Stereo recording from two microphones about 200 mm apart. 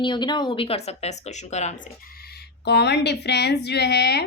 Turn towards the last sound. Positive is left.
turn(degrees=55)  # may be behind; listen again after turning